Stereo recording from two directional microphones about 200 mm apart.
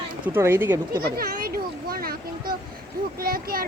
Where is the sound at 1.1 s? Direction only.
45° right (ahead or behind).